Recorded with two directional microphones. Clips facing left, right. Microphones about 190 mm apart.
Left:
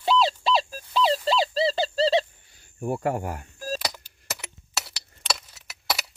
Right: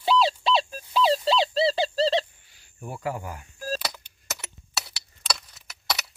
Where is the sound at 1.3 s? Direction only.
Centre (ahead or behind).